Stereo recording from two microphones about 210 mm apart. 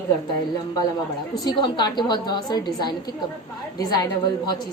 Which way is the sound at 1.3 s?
20° left (ahead or behind).